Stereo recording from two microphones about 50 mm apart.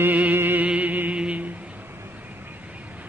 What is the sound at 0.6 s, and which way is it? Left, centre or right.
Music, right.